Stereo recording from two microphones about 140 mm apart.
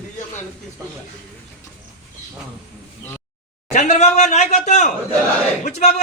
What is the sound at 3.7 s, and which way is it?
A man's voice, 55° left (ahead or behind).